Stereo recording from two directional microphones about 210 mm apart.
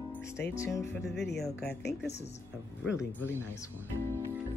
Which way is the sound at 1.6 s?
50° left (ahead or behind).